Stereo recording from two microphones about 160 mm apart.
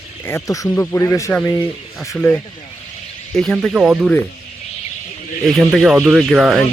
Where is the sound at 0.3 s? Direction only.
20° left (ahead or behind); by 4.1 s 5° right (ahead or behind).